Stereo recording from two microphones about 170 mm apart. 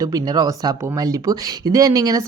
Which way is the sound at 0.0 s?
20° right (ahead or behind).